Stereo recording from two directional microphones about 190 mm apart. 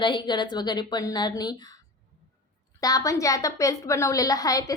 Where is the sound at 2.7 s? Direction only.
20° left (ahead or behind).